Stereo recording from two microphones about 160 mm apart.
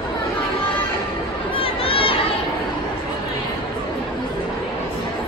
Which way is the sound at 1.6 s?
35° left (ahead or behind).